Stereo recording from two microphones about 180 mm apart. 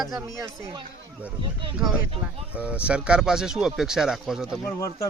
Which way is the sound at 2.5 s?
5° right (ahead or behind).